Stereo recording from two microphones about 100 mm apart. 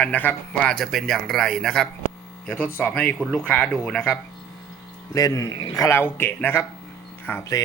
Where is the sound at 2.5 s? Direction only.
20° left (ahead or behind).